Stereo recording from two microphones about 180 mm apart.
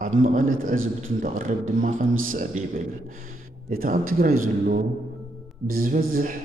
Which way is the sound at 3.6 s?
50° right (ahead or behind).